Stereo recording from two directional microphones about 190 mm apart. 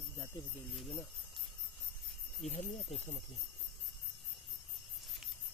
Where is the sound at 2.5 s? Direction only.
35° left (ahead or behind).